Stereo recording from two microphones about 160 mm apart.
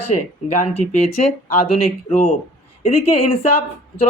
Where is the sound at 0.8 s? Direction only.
40° left (ahead or behind).